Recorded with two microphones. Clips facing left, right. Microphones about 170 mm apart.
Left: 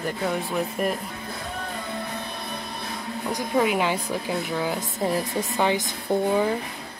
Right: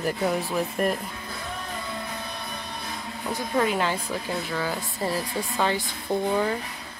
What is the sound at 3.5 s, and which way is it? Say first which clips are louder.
Speech: left 2 dB; 10° left (ahead or behind).